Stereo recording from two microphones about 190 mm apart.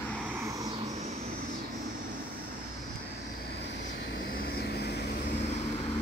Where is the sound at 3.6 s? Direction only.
70° left (ahead or behind).